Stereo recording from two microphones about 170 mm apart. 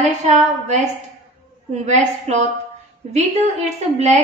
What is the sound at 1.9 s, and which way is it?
Speech, 40° right (ahead or behind).